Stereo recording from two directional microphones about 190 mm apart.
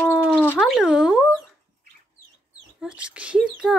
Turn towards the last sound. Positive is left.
turn(degrees=-5)  # may be behind; listen again after turning